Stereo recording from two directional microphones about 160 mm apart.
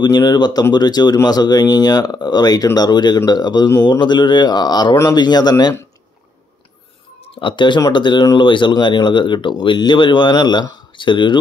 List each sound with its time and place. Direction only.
0.0 s speech: 25° left (ahead or behind)
7.2 s speech: 30° left (ahead or behind)